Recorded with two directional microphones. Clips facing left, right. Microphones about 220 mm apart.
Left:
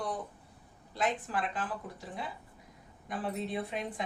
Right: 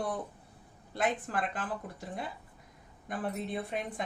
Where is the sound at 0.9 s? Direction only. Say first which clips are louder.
Right 1 dB; 55° right (ahead or behind).